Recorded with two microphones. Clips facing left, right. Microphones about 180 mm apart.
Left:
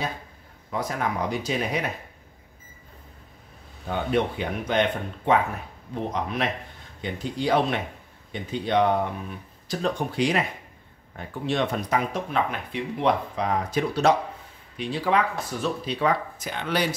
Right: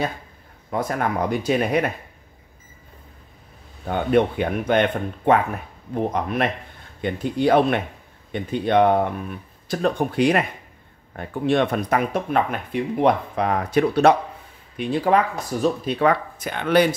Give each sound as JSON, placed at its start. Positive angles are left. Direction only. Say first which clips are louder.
{"t": 0.7, "sound": "speech", "louder": "right 4 dB", "side_deg": -55}
{"t": 3.8, "sound": "speech", "louder": "right 6 dB", "side_deg": -55}